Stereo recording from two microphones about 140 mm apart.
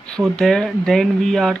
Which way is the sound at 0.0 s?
5° left (ahead or behind).